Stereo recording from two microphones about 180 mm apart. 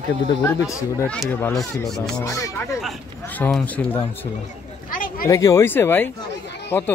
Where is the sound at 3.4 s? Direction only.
5° left (ahead or behind).